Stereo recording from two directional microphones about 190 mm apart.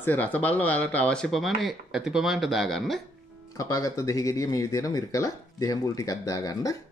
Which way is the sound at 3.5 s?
15° left (ahead or behind).